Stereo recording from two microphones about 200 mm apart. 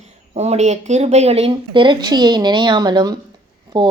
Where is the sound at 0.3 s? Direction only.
35° right (ahead or behind).